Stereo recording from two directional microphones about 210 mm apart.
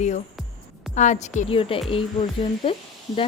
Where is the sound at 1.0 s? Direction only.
35° left (ahead or behind).